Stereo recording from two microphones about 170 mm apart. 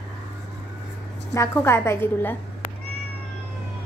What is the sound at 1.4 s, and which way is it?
A woman's voice, 15° left (ahead or behind).